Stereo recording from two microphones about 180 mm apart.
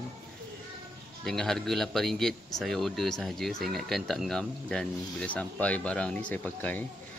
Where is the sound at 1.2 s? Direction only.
5° left (ahead or behind).